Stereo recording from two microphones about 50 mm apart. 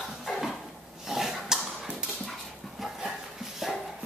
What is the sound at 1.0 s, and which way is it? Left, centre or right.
Dog, centre.